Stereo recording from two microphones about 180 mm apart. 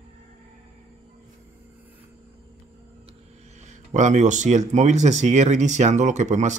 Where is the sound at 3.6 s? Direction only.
40° right (ahead or behind).